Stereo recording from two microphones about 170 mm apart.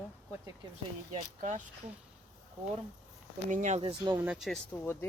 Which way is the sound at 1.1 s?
45° right (ahead or behind).